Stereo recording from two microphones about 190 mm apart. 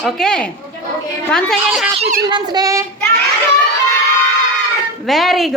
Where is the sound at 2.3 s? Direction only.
20° right (ahead or behind).